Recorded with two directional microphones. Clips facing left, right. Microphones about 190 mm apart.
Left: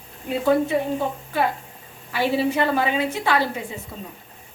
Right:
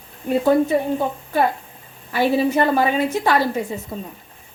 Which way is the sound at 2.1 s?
45° right (ahead or behind).